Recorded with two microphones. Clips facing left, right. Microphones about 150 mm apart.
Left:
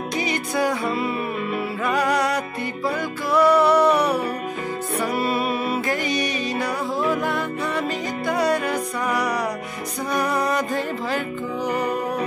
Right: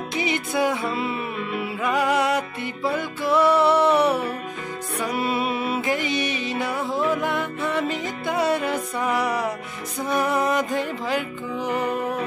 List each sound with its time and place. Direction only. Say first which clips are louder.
0.1 s music: even; 20° right (ahead or behind)
2.0 s music: right 1 dB; 20° right (ahead or behind)